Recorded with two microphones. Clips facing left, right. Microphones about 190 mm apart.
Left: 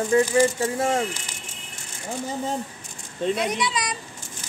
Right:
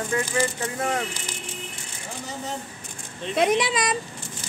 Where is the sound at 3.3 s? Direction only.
50° right (ahead or behind).